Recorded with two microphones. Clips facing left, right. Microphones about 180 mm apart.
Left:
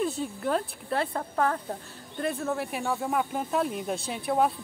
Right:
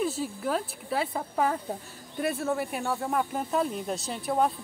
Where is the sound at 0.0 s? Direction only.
5° right (ahead or behind).